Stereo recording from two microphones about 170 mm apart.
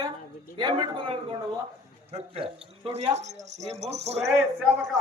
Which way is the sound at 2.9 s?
40° right (ahead or behind).